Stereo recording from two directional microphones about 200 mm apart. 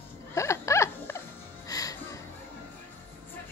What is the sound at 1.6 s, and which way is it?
Music, 20° left (ahead or behind).